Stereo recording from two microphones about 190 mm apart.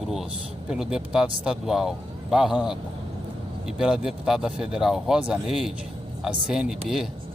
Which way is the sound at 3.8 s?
5° right (ahead or behind).